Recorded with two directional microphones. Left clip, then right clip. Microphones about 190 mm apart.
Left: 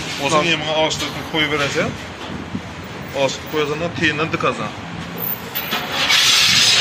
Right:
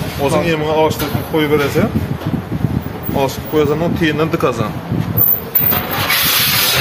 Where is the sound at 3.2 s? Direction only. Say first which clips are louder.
Right 4 dB; 70° right (ahead or behind).